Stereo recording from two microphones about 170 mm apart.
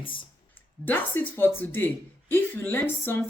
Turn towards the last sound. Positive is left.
turn(degrees=10)  # may be behind; listen again after turning